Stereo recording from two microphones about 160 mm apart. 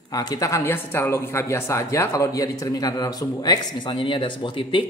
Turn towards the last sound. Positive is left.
turn(degrees=30)  # may be behind; listen again after turning